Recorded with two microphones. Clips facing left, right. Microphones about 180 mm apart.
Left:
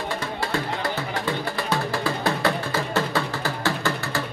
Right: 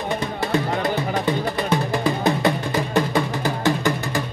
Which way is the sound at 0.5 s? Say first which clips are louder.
Right 7 dB; 20° right (ahead or behind).